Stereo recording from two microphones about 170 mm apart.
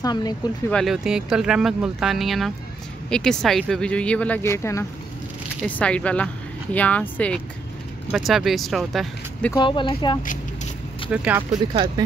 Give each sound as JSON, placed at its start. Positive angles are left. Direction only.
{"t": 0.0, "sound": "speech", "side_deg": 25}
{"t": 0.7, "sound": "speech", "side_deg": 0}
{"t": 9.5, "sound": "speech", "side_deg": 30}
{"t": 10.2, "sound": "a sound", "side_deg": 50}
{"t": 11.1, "sound": "speech", "side_deg": -10}